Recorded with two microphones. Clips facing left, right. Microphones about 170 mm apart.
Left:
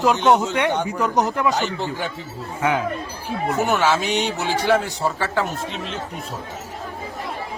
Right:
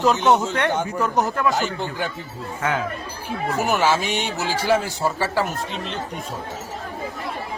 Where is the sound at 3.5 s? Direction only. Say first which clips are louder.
Left 1 dB; centre (ahead or behind).